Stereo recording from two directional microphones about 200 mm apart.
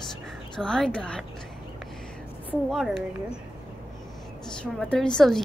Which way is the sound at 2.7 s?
Centre (ahead or behind).